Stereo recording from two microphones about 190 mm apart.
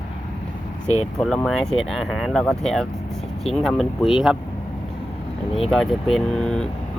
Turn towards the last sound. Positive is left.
turn(degrees=5)  # may be behind; listen again after turning